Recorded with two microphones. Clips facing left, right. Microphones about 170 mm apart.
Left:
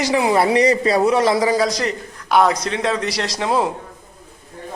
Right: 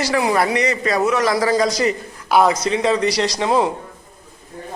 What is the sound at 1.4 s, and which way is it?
A man's voice, 5° left (ahead or behind).